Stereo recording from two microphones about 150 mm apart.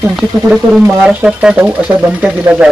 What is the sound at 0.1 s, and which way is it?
Speech, centre (ahead or behind).